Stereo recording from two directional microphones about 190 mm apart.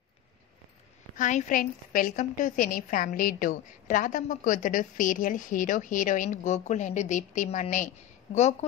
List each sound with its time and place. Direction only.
1.1 s a woman's voice: 45° left (ahead or behind)